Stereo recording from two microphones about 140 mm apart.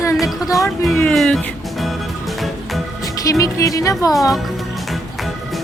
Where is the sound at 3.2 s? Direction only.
25° left (ahead or behind).